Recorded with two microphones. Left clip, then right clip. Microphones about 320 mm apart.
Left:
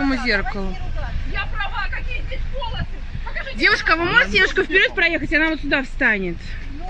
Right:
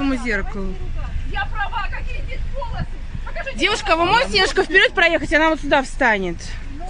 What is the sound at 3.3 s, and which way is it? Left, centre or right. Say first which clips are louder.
Speech: left 3 dB; centre.